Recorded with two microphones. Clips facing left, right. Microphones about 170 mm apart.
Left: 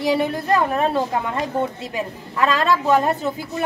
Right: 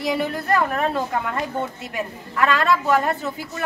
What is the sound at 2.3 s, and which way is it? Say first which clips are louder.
A woman's voice: left 1 dB; 20° left (ahead or behind).